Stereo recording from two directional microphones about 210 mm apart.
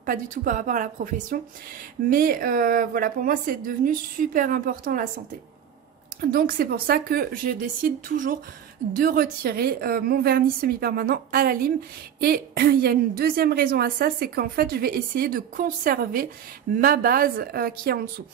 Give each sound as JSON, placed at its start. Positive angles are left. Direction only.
{"t": 0.0, "sound": "a woman's voice", "side_deg": -40}
{"t": 6.3, "sound": "a woman's voice", "side_deg": -45}